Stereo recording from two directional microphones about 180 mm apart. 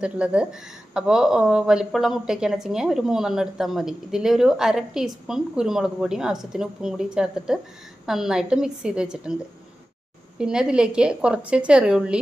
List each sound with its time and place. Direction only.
0.0 s speech: 5° right (ahead or behind)